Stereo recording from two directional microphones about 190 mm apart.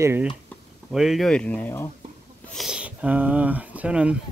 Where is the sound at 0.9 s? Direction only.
Centre (ahead or behind).